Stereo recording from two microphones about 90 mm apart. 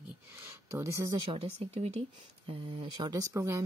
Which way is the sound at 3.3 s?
30° right (ahead or behind).